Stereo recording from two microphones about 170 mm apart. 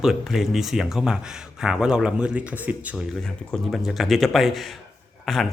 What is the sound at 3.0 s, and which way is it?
Speech, centre (ahead or behind).